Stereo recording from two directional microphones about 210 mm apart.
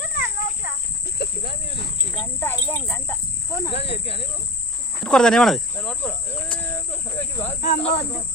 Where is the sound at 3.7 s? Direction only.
25° left (ahead or behind).